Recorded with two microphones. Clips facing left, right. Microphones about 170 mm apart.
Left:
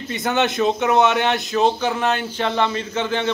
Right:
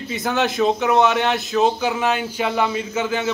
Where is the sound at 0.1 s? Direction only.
Centre (ahead or behind).